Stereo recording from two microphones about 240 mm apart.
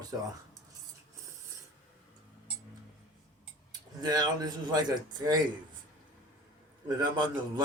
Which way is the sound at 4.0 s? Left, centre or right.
Centre.